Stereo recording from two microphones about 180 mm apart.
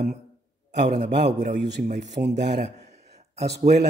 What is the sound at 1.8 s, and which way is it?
Speech, 40° right (ahead or behind).